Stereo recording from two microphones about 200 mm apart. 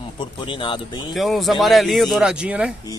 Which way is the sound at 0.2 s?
25° left (ahead or behind).